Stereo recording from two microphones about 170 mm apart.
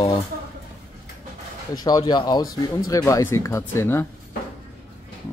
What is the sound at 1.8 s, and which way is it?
Speech, 25° left (ahead or behind).